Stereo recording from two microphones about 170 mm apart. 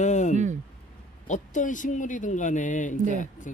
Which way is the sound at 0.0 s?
45° left (ahead or behind).